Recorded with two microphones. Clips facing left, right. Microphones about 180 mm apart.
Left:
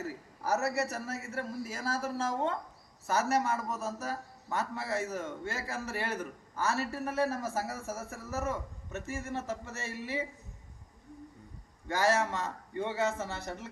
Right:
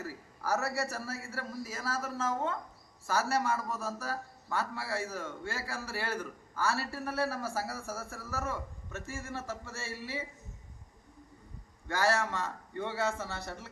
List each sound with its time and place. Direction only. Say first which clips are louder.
0.4 s a man's voice: left 2 dB; 20° left (ahead or behind)
3.3 s a man's voice: left 1 dB; 20° left (ahead or behind)
11.9 s a man's voice: left 2 dB; 15° left (ahead or behind)